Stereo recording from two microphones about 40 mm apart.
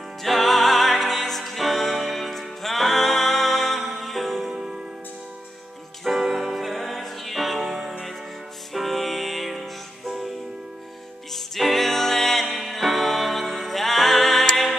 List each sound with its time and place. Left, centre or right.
0.2 s music: centre
4.5 s music: centre
6.0 s music: centre
11.3 s music: centre